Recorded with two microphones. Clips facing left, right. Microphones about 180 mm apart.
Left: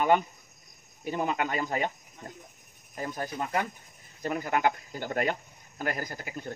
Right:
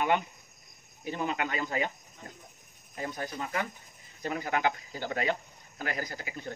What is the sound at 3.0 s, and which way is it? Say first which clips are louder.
Speech: left 2 dB; 45° left (ahead or behind).